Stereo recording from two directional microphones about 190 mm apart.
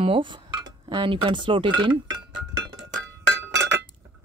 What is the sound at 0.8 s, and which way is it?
Cutlery, 25° right (ahead or behind).